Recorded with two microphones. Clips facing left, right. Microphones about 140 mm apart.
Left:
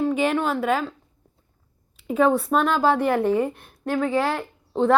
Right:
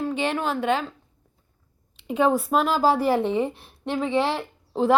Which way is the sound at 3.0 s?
30° right (ahead or behind).